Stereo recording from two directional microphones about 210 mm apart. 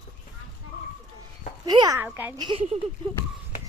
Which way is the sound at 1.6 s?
20° right (ahead or behind).